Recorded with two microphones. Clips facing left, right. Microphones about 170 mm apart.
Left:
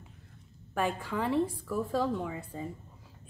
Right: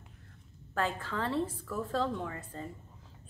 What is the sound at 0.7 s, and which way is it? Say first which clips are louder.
A woman's voice: left 2 dB; 15° left (ahead or behind).